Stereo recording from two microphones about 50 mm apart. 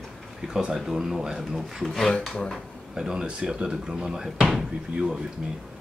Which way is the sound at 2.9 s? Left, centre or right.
Centre.